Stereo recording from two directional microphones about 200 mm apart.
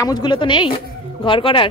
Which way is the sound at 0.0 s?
20° left (ahead or behind).